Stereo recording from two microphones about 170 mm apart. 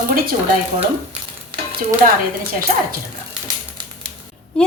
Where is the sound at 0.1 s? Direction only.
60° right (ahead or behind).